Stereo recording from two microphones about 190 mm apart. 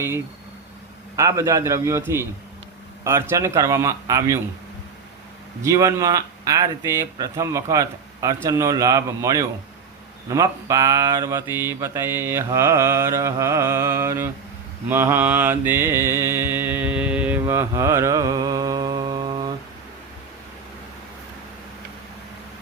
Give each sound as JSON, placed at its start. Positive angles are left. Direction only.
{"t": 1.1, "sound": "mantra", "side_deg": -15}
{"t": 5.6, "sound": "mantra", "side_deg": -15}